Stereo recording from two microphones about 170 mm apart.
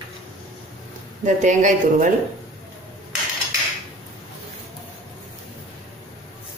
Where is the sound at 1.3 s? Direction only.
45° right (ahead or behind).